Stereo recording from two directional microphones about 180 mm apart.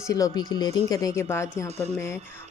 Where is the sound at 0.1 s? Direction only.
20° left (ahead or behind).